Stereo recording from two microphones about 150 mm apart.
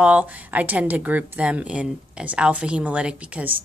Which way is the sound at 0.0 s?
10° right (ahead or behind).